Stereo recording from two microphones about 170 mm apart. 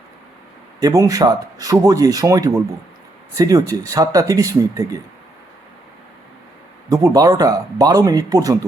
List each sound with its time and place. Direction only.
0.8 s speech: 20° right (ahead or behind)
6.9 s speech: 20° right (ahead or behind)